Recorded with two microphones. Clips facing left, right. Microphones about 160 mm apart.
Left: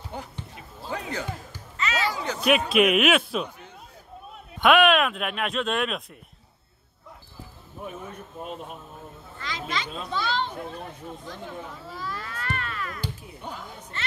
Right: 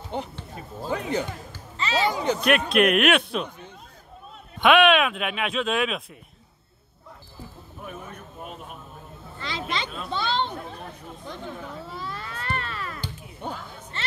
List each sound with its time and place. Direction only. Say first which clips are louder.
0.1 s speech: right 6 dB; 20° right (ahead or behind)
0.6 s music: right 7 dB; 40° right (ahead or behind)
1.8 s a sound: right 3 dB; 25° right (ahead or behind)
2.4 s speech: left 1 dB; centre (ahead or behind)
4.6 s speech: right 1 dB; centre (ahead or behind)
9.4 s a child's voice: right 2 dB; 25° right (ahead or behind)
11.9 s a sound: even; 25° right (ahead or behind)